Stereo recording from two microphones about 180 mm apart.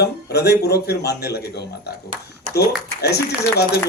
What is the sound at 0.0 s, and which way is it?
Speech, 65° left (ahead or behind).